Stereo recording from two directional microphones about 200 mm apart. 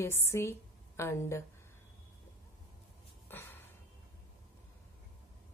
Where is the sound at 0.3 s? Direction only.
15° left (ahead or behind).